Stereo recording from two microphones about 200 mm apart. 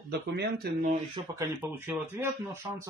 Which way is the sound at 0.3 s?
55° right (ahead or behind).